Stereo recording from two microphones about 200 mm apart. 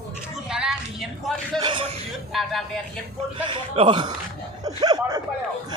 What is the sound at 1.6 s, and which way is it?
Speech, 25° right (ahead or behind).